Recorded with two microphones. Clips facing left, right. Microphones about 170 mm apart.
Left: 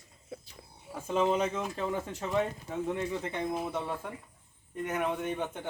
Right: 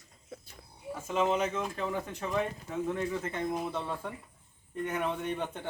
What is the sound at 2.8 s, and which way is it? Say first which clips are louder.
Speech: even; 15° left (ahead or behind).